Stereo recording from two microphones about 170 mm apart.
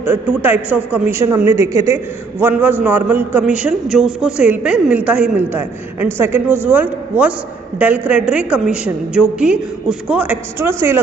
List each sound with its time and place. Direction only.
0.0 s a man's voice: 10° right (ahead or behind)